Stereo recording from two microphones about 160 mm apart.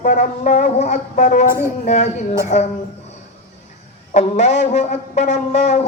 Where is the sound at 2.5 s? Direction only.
45° left (ahead or behind).